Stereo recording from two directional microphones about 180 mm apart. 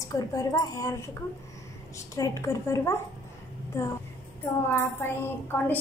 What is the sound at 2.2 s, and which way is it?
A woman's voice, 20° left (ahead or behind).